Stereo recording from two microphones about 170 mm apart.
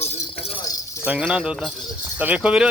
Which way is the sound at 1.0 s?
10° right (ahead or behind).